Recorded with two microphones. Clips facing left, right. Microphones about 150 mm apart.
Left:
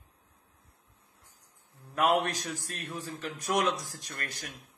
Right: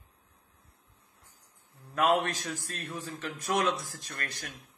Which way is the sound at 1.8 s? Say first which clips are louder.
Even; 15° left (ahead or behind).